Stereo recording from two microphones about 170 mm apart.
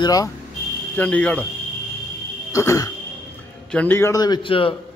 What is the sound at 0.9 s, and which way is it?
Speech, 10° left (ahead or behind).